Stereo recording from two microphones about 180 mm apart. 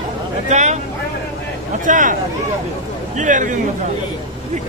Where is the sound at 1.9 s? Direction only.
45° right (ahead or behind).